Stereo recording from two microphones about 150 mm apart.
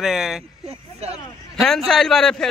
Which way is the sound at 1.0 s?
45° right (ahead or behind).